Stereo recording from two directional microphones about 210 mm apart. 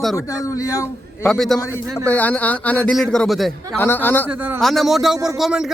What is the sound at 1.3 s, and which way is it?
A man's voice, centre (ahead or behind).